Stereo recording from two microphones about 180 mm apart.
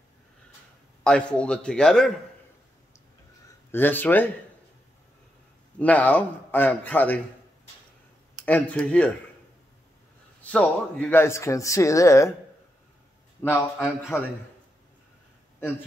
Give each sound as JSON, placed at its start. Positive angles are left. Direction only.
{"t": 1.0, "sound": "a man's voice", "side_deg": 5}
{"t": 3.7, "sound": "speech", "side_deg": 10}
{"t": 5.8, "sound": "speech", "side_deg": 10}
{"t": 8.5, "sound": "speech", "side_deg": 10}
{"t": 10.4, "sound": "speech", "side_deg": 5}
{"t": 13.4, "sound": "a man's voice", "side_deg": 10}